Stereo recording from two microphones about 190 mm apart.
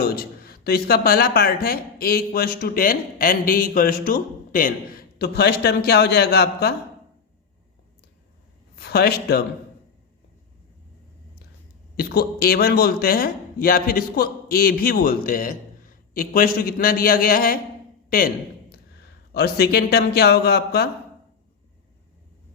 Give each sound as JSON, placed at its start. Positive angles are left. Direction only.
{"t": 0.0, "sound": "speech", "side_deg": 55}
{"t": 8.8, "sound": "a man's voice", "side_deg": 55}
{"t": 11.9, "sound": "speech", "side_deg": 55}
{"t": 19.3, "sound": "a man's voice", "side_deg": 60}